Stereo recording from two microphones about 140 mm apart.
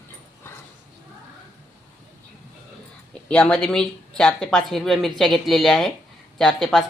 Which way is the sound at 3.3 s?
10° left (ahead or behind).